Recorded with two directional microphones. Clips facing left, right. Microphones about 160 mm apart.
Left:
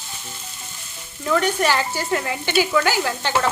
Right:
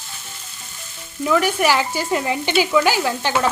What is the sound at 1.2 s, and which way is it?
Stir, 10° right (ahead or behind).